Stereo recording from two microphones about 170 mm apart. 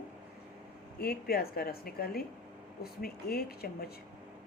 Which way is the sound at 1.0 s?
65° left (ahead or behind).